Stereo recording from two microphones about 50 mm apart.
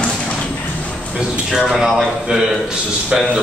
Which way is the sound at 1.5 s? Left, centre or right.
Centre.